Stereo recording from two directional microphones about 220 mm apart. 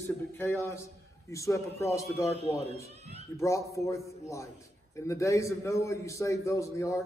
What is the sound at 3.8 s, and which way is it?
A man's voice, 15° left (ahead or behind).